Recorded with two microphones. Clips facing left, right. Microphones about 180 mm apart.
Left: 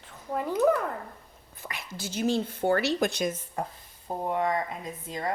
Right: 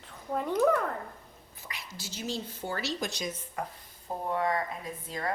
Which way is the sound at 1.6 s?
55° left (ahead or behind).